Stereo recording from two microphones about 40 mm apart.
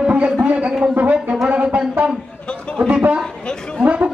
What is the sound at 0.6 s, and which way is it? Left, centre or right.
Speech, centre.